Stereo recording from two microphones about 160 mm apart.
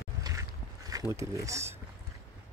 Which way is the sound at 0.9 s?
20° right (ahead or behind).